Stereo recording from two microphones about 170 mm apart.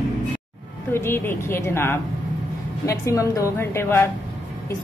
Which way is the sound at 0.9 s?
15° left (ahead or behind).